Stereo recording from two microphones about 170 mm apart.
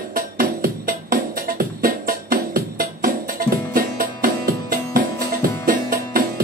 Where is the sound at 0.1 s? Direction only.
55° right (ahead or behind).